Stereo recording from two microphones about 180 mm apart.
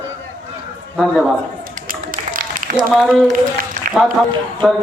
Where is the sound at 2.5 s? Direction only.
50° right (ahead or behind).